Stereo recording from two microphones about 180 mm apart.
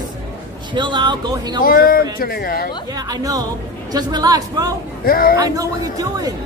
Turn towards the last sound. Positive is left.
turn(degrees=-20)  # may be behind; listen again after turning